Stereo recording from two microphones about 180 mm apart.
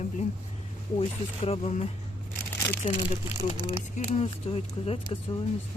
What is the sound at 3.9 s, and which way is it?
Speech, 35° left (ahead or behind).